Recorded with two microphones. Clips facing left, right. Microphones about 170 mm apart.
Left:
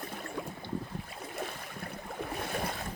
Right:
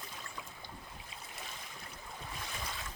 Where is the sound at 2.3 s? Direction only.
60° left (ahead or behind).